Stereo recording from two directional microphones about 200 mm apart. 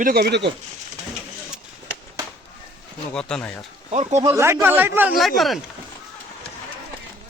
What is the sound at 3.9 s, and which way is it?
Speech, 35° right (ahead or behind).